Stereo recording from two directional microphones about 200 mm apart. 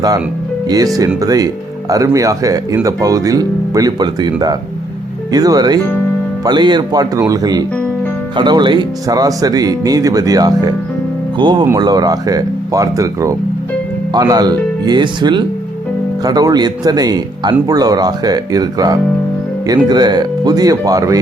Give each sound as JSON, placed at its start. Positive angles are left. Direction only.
{"t": 1.2, "sound": "speech", "side_deg": -20}